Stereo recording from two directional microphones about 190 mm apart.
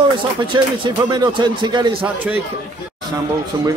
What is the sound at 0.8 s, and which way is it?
A man's voice, 25° right (ahead or behind).